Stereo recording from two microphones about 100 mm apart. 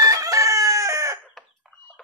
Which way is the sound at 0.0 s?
35° right (ahead or behind).